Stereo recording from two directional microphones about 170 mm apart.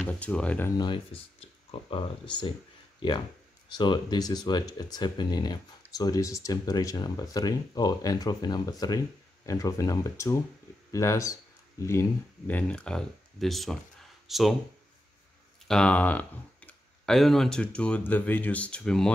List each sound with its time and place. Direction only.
0.0 s speech: 5° left (ahead or behind)
0.7 s speech: 30° left (ahead or behind)
3.6 s speech: 25° left (ahead or behind); by 14.6 s centre (ahead or behind)
15.7 s speech: 5° left (ahead or behind)